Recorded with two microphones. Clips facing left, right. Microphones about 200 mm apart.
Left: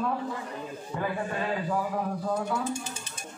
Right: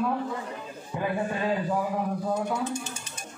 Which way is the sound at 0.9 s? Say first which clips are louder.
Right 2 dB; 15° right (ahead or behind).